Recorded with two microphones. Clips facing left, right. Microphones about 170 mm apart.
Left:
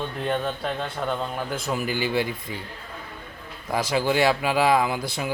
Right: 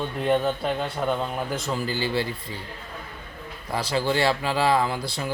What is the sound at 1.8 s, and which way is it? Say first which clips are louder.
Speech: left 3 dB; 15° left (ahead or behind).